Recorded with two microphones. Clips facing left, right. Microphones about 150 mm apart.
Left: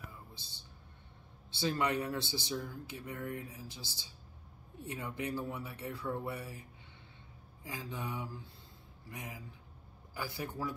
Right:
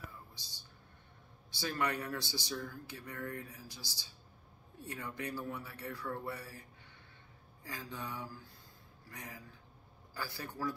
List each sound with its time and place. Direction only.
1.6 s speech: 20° left (ahead or behind)
7.6 s speech: 20° left (ahead or behind)